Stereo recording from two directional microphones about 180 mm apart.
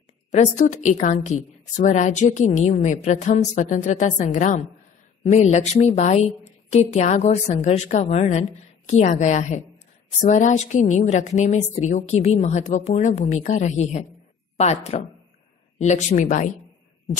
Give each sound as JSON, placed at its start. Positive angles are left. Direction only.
{"t": 0.3, "sound": "a woman's voice", "side_deg": 40}